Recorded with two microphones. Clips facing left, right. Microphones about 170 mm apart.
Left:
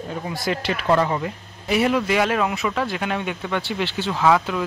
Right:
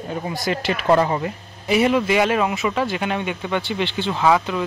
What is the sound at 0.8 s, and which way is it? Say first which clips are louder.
Speech: right 2 dB; 20° right (ahead or behind).